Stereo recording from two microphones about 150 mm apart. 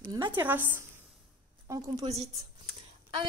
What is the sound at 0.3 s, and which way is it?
A woman's voice, 10° right (ahead or behind).